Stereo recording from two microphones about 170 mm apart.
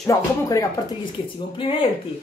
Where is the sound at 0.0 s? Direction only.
20° left (ahead or behind).